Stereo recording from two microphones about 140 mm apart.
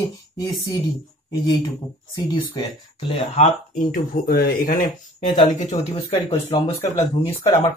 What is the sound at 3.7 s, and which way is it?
Speech, 75° left (ahead or behind).